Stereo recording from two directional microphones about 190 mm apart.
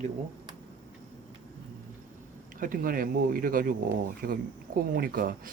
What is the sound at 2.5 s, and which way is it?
Speech, 45° right (ahead or behind).